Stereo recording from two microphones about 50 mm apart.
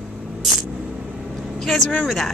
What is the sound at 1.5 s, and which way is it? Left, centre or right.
Vehicle, centre.